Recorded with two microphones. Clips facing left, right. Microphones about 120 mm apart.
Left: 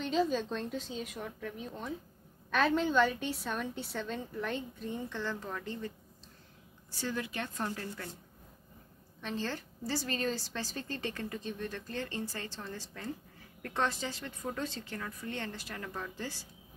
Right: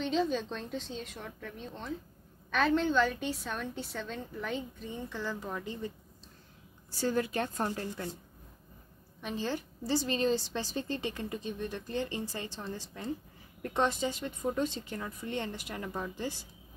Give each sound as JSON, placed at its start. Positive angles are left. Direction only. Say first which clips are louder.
{"t": 0.0, "sound": "a woman's voice", "louder": "even", "side_deg": 5}
{"t": 6.9, "sound": "a woman's voice", "louder": "right 6 dB", "side_deg": -40}
{"t": 9.2, "sound": "a woman's voice", "louder": "right 2 dB", "side_deg": -15}